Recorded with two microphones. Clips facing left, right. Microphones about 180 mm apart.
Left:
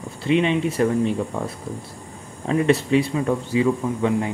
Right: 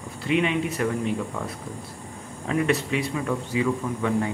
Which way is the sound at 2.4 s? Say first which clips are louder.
Left 5 dB; 30° left (ahead or behind).